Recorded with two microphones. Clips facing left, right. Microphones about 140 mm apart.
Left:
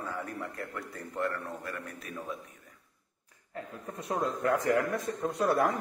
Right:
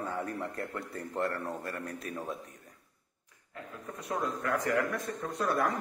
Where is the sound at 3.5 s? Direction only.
30° left (ahead or behind).